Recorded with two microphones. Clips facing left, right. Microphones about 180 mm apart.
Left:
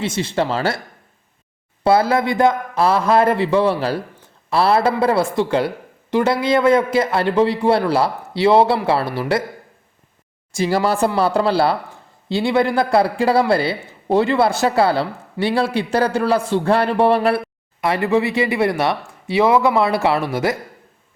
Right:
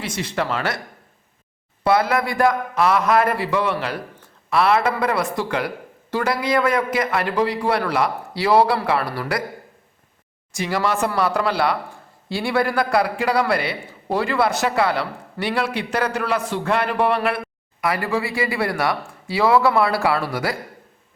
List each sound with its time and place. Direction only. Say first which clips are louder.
0.0 s a man's voice: left 5 dB; 25° left (ahead or behind)
1.8 s a man's voice: left 3 dB; 30° left (ahead or behind)
10.5 s a man's voice: left 4 dB; 30° left (ahead or behind)